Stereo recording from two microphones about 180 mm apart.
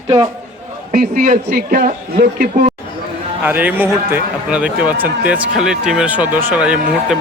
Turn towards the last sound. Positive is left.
turn(degrees=-5)  # may be behind; listen again after turning